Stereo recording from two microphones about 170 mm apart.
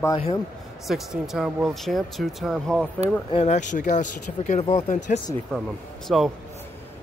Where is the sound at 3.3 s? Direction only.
40° left (ahead or behind).